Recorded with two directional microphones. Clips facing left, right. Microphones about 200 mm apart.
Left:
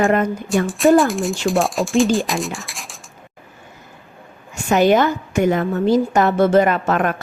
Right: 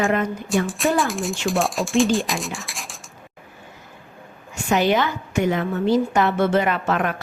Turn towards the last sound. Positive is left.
turn(degrees=45)  # may be behind; listen again after turning